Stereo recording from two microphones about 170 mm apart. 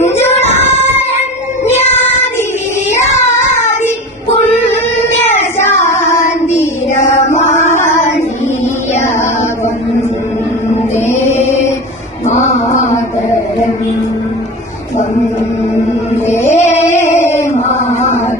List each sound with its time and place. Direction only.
0.0 s child singing: 15° left (ahead or behind)
0.3 s child singing: 40° left (ahead or behind)
5.5 s child singing: 15° left (ahead or behind)
5.9 s child singing: 45° left (ahead or behind)
6.9 s a sound: 45° left (ahead or behind)
10.9 s music: 15° left (ahead or behind)
16.5 s music: 40° left (ahead or behind)
17.0 s a sound: 15° left (ahead or behind)